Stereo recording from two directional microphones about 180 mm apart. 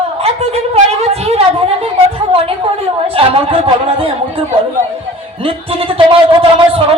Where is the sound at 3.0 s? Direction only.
30° right (ahead or behind).